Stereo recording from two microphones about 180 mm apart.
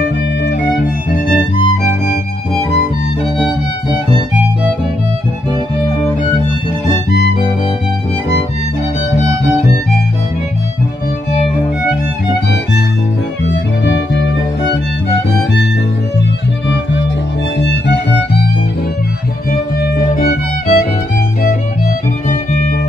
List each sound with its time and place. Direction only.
13.5 s music: 90° left
17.6 s music: 75° left (ahead or behind)
19.8 s music: 55° left (ahead or behind)